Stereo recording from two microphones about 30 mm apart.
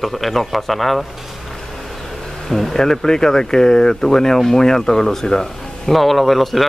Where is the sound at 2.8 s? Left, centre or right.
Centre.